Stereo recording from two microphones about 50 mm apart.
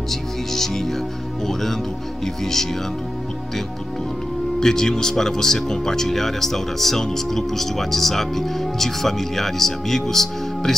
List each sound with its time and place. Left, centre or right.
0.1 s speech: centre
4.6 s speech: centre